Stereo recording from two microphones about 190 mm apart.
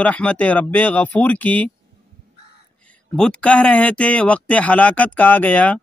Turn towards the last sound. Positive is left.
turn(degrees=5)  # may be behind; listen again after turning